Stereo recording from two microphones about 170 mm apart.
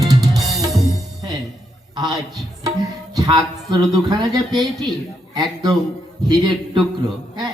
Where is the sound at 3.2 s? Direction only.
25° right (ahead or behind).